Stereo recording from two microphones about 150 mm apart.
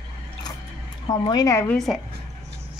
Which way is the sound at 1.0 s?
30° left (ahead or behind).